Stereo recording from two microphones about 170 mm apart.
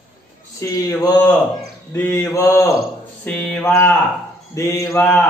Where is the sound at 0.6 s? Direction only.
20° left (ahead or behind).